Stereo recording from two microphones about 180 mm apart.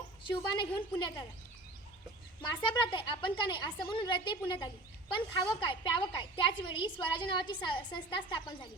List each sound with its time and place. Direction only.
0.3 s a woman's voice: 25° left (ahead or behind)
2.6 s a woman's voice: 30° left (ahead or behind)